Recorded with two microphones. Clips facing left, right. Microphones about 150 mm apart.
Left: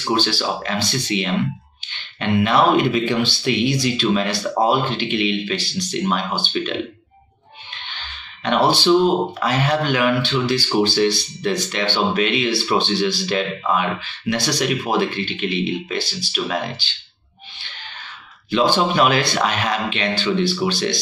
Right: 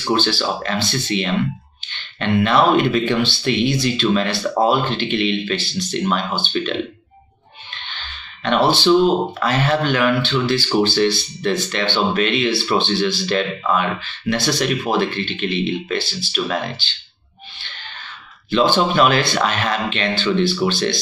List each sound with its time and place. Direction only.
0.1 s speech: 15° left (ahead or behind)
1.9 s a sound: 15° left (ahead or behind)
2.3 s speech: 10° left (ahead or behind)
8.5 s speech: 15° left (ahead or behind)
18.5 s speech: 15° left (ahead or behind)